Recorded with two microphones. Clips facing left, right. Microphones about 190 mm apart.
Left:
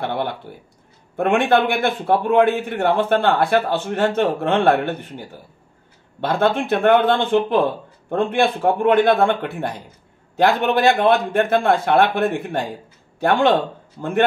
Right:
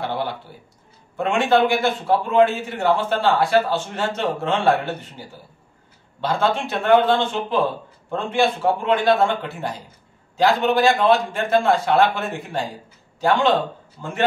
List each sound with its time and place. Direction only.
0.0 s a sound: 60° left (ahead or behind)
1.1 s a man's voice: 55° left (ahead or behind)
6.2 s a man's voice: 55° left (ahead or behind)